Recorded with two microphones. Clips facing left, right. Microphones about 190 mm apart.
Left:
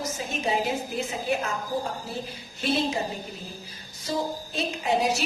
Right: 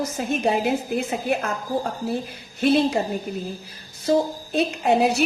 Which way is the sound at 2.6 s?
55° right (ahead or behind).